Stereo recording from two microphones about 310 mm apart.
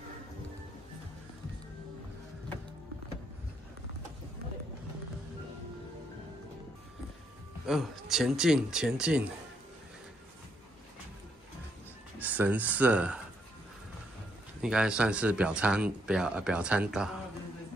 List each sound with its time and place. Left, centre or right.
7.6 s speech: centre
12.2 s speech: centre
14.6 s speech: centre